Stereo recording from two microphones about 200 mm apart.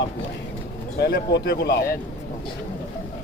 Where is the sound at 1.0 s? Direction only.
55° left (ahead or behind).